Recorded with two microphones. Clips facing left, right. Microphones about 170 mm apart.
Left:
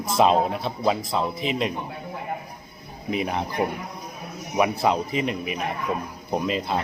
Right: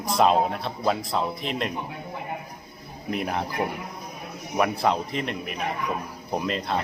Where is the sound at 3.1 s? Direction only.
Centre (ahead or behind).